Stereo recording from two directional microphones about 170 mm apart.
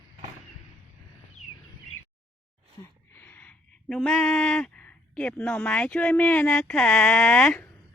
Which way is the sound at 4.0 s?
5° left (ahead or behind).